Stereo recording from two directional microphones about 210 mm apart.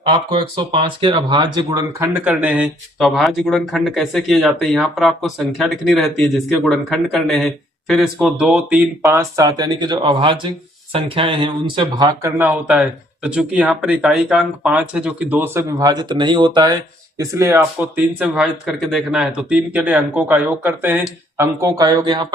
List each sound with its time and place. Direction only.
0.1 s speech: 25° right (ahead or behind)